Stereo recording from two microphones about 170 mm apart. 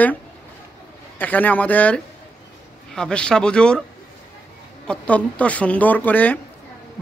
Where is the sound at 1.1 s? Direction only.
10° left (ahead or behind).